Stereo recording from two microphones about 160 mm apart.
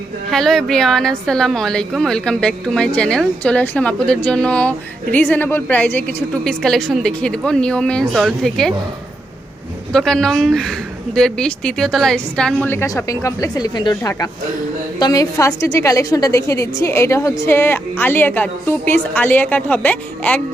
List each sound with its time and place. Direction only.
0.3 s a woman's voice: centre (ahead or behind)
9.9 s a woman's voice: 5° left (ahead or behind)
12.6 s a woman's voice: 15° left (ahead or behind)